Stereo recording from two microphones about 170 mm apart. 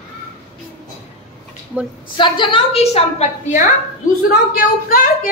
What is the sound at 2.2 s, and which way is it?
A woman's voice, 30° left (ahead or behind).